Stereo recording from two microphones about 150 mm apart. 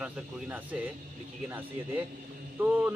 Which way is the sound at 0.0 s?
10° right (ahead or behind).